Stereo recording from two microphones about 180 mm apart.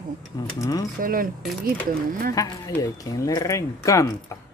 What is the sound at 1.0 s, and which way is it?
Speech, 50° right (ahead or behind).